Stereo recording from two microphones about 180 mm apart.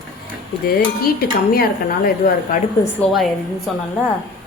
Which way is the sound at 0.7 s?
55° left (ahead or behind).